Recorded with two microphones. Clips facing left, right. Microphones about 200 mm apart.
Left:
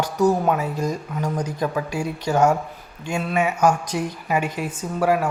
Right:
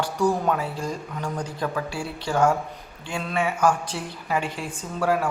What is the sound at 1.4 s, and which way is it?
A woman's voice, 10° left (ahead or behind).